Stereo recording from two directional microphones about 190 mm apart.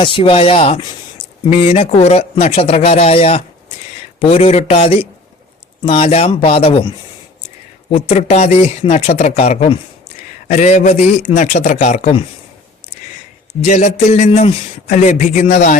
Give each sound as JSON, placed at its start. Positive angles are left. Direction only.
{"t": 0.0, "sound": "a man's voice", "side_deg": 25}
{"t": 13.6, "sound": "a man's voice", "side_deg": 40}